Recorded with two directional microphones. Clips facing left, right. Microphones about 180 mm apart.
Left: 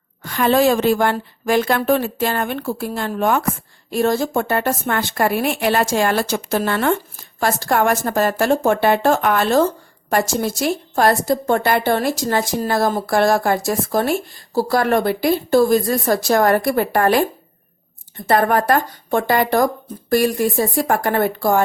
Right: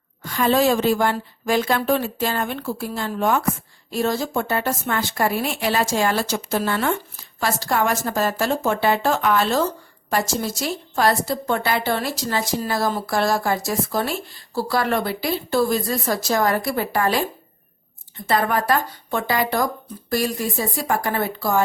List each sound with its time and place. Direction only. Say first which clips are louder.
0.2 s a woman's voice: left 3 dB; 60° left (ahead or behind)
18.3 s a woman's voice: left 4 dB; 50° left (ahead or behind)